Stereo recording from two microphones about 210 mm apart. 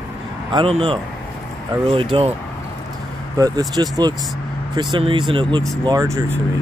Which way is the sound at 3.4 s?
15° right (ahead or behind).